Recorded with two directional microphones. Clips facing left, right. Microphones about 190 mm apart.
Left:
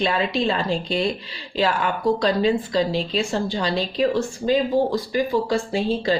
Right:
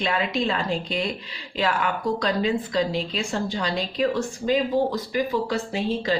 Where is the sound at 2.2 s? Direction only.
30° left (ahead or behind).